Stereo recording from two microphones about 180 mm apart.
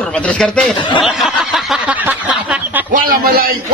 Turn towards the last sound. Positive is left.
turn(degrees=-55)  # may be behind; listen again after turning